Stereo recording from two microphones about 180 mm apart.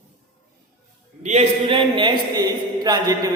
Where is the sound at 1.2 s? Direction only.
35° right (ahead or behind); by 3.3 s 20° right (ahead or behind).